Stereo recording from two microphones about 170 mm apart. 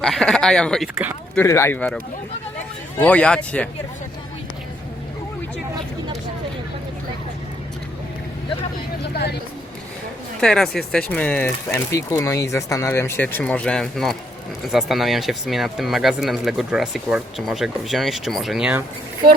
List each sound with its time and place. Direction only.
0.0 s speech: 5° left (ahead or behind)
1.4 s speech: 15° left (ahead or behind)
3.0 s speech: 5° left (ahead or behind)
9.1 s speech: 70° left (ahead or behind)
10.4 s speech: 5° left (ahead or behind)